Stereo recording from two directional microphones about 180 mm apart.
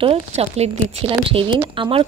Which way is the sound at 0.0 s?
35° right (ahead or behind).